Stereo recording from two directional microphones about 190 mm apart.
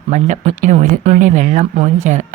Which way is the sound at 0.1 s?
40° right (ahead or behind).